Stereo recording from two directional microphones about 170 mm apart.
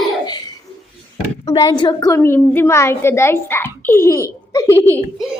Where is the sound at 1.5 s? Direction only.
25° left (ahead or behind).